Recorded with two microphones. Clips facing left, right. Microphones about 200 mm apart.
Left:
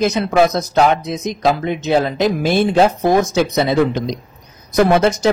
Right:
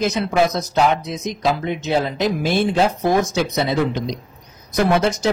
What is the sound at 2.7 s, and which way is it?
Speech, 55° left (ahead or behind).